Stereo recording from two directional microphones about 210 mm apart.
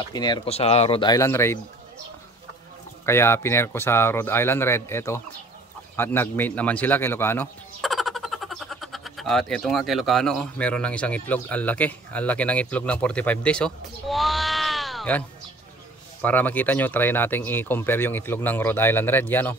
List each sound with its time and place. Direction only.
0.1 s speech: 20° left (ahead or behind)
3.1 s speech: 10° left (ahead or behind)
7.8 s speech: centre (ahead or behind)